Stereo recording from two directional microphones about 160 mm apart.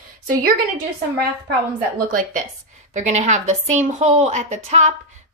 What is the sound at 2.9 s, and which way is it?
A woman's voice, 45° right (ahead or behind).